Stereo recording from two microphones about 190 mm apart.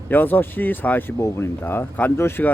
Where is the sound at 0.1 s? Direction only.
10° left (ahead or behind).